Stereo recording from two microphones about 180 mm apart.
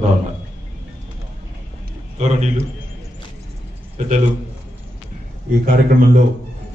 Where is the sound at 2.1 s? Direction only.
40° right (ahead or behind).